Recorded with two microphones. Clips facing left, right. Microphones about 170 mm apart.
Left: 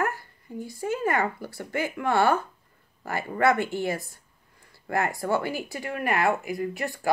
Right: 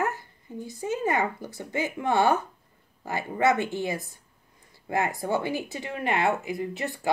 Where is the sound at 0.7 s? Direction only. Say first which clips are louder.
Even; 20° right (ahead or behind).